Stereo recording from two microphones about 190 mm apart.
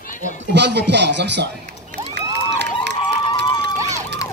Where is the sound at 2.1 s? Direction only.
65° right (ahead or behind).